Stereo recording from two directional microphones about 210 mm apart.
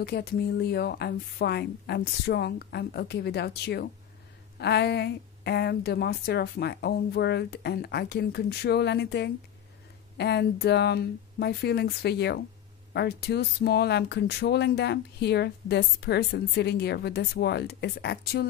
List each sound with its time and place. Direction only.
0.0 s speech: 45° left (ahead or behind)